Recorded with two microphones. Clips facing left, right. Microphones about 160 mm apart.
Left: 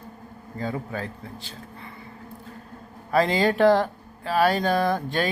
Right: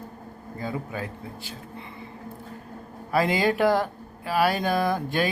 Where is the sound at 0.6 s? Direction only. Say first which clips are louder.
Left 2 dB; 15° right (ahead or behind).